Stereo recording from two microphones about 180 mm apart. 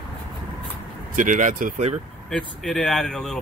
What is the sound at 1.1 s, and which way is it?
Speech, 45° right (ahead or behind).